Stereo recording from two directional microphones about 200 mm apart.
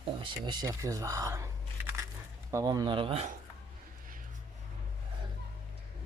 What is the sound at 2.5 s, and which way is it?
Speech, 15° right (ahead or behind).